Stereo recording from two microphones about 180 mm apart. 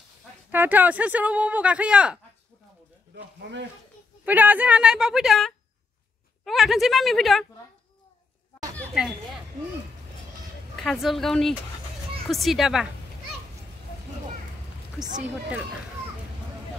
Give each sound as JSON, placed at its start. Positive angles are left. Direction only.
{"t": 0.5, "sound": "speech", "side_deg": -10}
{"t": 3.2, "sound": "speech", "side_deg": -80}
{"t": 4.2, "sound": "a woman's voice", "side_deg": -10}
{"t": 10.8, "sound": "a woman's voice", "side_deg": 0}